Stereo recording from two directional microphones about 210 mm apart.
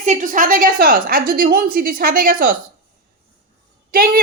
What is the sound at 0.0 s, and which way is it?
A woman's voice, 35° right (ahead or behind).